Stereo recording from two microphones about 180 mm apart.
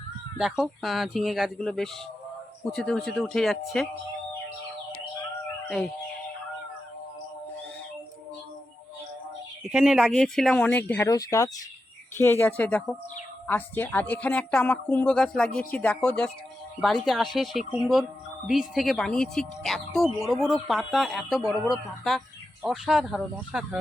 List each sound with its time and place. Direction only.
0.3 s speech: 5° right (ahead or behind)
5.6 s music: centre (ahead or behind)
9.6 s speech: 5° right (ahead or behind)